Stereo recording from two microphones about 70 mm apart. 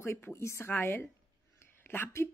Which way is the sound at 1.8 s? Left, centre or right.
Left.